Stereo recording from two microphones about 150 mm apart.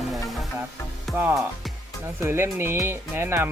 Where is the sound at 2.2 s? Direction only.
15° right (ahead or behind).